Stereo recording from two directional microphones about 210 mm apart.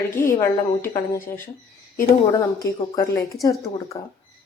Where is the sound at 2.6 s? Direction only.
15° left (ahead or behind).